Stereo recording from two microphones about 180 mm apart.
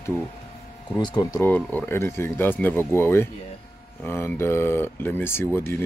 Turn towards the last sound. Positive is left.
turn(degrees=10)  # may be behind; listen again after turning